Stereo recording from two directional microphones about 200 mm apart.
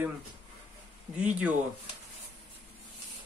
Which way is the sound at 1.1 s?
5° right (ahead or behind).